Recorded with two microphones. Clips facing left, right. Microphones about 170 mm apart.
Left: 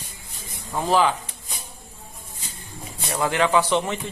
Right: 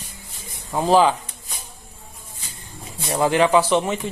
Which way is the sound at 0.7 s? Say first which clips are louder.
Right 4 dB; 20° right (ahead or behind).